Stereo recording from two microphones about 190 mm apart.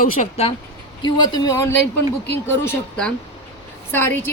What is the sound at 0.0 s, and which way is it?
Speech, 35° left (ahead or behind).